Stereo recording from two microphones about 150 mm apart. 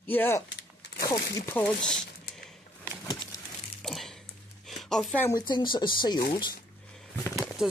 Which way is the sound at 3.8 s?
5° left (ahead or behind).